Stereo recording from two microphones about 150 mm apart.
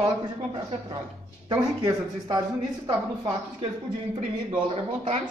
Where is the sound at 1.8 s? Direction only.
30° right (ahead or behind).